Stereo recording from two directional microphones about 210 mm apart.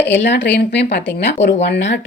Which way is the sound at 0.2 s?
55° left (ahead or behind).